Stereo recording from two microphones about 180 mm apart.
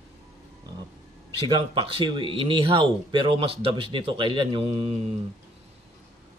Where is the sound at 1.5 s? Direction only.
30° right (ahead or behind).